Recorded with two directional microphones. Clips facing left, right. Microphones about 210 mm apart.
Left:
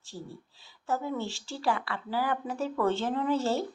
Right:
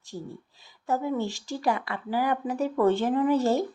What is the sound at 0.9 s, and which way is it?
Speech, 15° right (ahead or behind).